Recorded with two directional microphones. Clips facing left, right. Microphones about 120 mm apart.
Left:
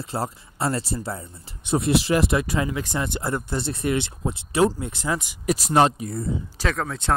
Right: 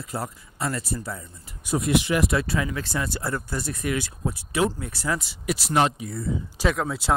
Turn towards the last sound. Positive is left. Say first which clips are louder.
# right 1 dB
turn(degrees=-5)  # may be behind; listen again after turning